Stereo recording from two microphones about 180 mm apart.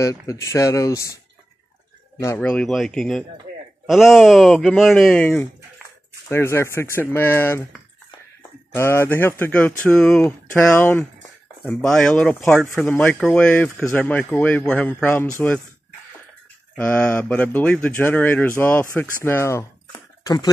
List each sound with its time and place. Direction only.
0.0 s a man's voice: 15° left (ahead or behind)
2.4 s speech: 5° left (ahead or behind)
16.7 s speech: 10° left (ahead or behind)